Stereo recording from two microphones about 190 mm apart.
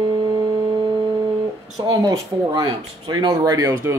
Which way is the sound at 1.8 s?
20° right (ahead or behind).